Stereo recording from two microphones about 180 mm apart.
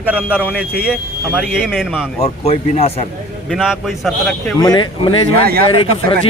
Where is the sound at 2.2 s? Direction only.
35° left (ahead or behind).